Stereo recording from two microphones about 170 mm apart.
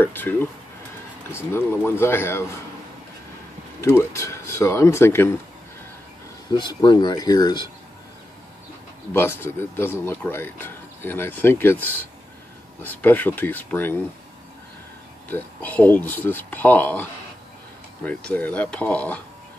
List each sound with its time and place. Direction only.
0.0 s speech: 10° left (ahead or behind)
3.8 s speech: 15° left (ahead or behind)
6.5 s speech: 25° left (ahead or behind)
9.1 s speech: 15° left (ahead or behind)
15.2 s speech: 10° left (ahead or behind)